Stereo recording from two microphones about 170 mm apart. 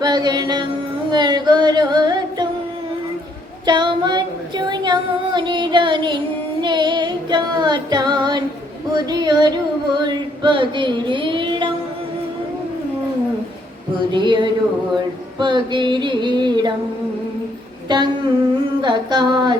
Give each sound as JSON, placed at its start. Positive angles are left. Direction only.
{"t": 0.0, "sound": "child singing", "side_deg": -25}
{"t": 3.7, "sound": "female singing", "side_deg": -25}
{"t": 6.6, "sound": "child singing", "side_deg": -25}
{"t": 14.1, "sound": "child singing", "side_deg": -25}
{"t": 17.8, "sound": "a sound", "side_deg": -25}
{"t": 18.8, "sound": "child singing", "side_deg": -25}